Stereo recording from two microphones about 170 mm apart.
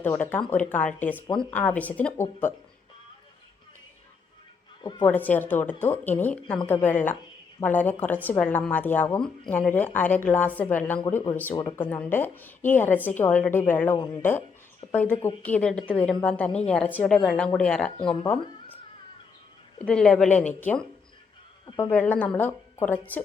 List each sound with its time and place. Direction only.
0.0 s a woman's voice: 10° left (ahead or behind)
4.8 s a woman's voice: 25° left (ahead or behind)
5.0 s a woman's voice: 10° left (ahead or behind)
19.8 s a woman's voice: 5° left (ahead or behind)